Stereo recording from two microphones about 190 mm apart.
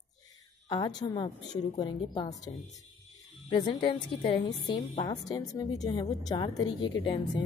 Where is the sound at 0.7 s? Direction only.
20° left (ahead or behind).